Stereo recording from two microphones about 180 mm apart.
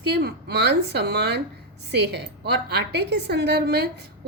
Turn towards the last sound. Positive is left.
turn(degrees=-65)  # may be behind; listen again after turning